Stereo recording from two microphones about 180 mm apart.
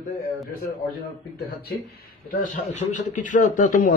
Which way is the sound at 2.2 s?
45° left (ahead or behind).